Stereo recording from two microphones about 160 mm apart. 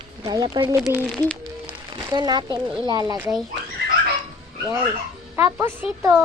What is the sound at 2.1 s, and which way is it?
A child's voice, 25° right (ahead or behind).